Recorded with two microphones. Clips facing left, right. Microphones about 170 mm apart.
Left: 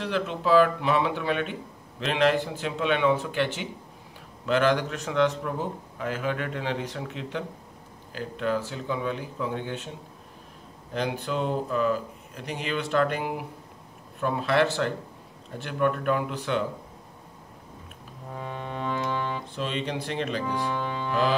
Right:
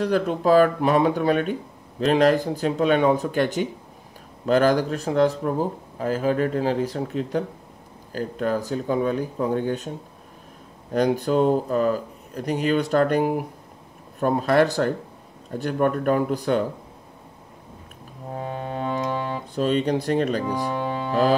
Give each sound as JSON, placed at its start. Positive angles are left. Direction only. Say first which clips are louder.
{"t": 0.0, "sound": "speech", "louder": "right 7 dB", "side_deg": -45}
{"t": 10.9, "sound": "speech", "louder": "right 8 dB", "side_deg": -45}
{"t": 18.3, "sound": "music", "louder": "right 5 dB", "side_deg": -35}
{"t": 19.1, "sound": "speech", "louder": "right 4 dB", "side_deg": -35}
{"t": 20.7, "sound": "music", "louder": "right 4 dB", "side_deg": -30}